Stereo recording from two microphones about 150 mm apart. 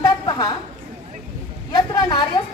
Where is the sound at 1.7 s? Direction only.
30° left (ahead or behind).